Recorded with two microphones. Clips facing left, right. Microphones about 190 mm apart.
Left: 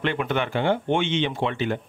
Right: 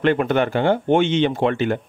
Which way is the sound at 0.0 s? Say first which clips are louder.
Right 7 dB; 45° right (ahead or behind).